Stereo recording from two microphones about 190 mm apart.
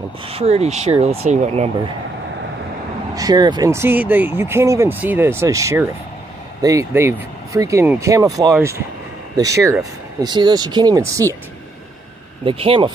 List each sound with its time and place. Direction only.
0.3 s speech: 35° right (ahead or behind)
3.2 s speech: 20° right (ahead or behind)
12.4 s speech: 30° right (ahead or behind)